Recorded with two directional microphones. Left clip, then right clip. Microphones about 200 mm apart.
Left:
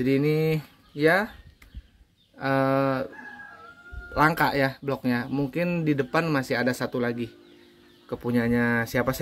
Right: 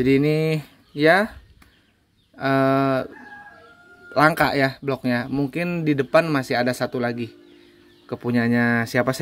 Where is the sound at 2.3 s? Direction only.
40° right (ahead or behind).